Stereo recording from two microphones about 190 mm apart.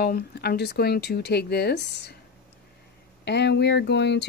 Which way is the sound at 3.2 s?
60° left (ahead or behind).